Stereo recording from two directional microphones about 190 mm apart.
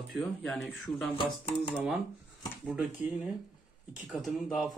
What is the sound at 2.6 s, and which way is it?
Speech, 5° right (ahead or behind).